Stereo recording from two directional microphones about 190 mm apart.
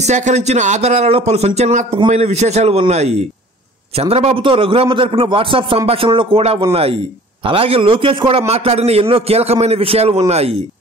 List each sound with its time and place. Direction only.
0.0 s a man's voice: 35° right (ahead or behind)